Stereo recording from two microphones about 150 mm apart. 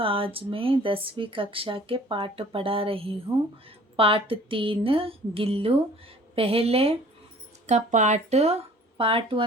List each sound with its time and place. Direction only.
0.0 s speech: 35° right (ahead or behind)
7.7 s speech: 50° right (ahead or behind)
9.0 s speech: 35° right (ahead or behind)